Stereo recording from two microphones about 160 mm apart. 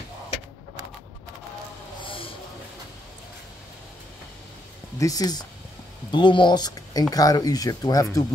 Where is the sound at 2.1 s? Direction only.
35° left (ahead or behind).